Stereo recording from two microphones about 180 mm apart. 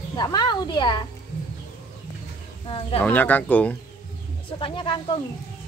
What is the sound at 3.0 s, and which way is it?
Speech, 10° left (ahead or behind).